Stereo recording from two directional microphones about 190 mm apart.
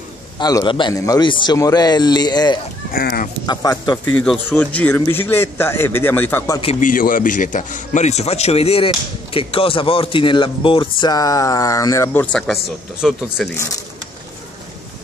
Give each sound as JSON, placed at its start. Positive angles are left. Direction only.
{"t": 0.4, "sound": "speech", "side_deg": 20}
{"t": 2.9, "sound": "speech", "side_deg": 55}
{"t": 3.8, "sound": "speech", "side_deg": 20}
{"t": 4.1, "sound": "speech", "side_deg": 5}
{"t": 6.6, "sound": "a man's voice", "side_deg": 30}
{"t": 6.9, "sound": "speech", "side_deg": 45}